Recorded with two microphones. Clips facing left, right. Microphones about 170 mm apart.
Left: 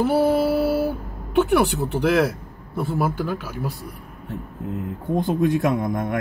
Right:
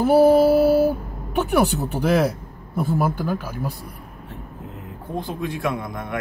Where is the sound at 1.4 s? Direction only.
Centre (ahead or behind).